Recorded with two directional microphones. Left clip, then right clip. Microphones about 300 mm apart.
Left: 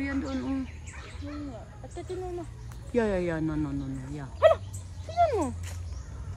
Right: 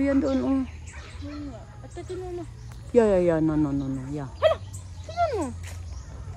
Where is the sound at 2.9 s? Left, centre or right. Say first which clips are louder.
Right 8 dB; centre.